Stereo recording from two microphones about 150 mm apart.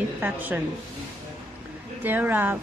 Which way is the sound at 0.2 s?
10° right (ahead or behind).